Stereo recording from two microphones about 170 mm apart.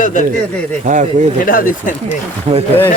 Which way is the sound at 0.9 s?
45° right (ahead or behind).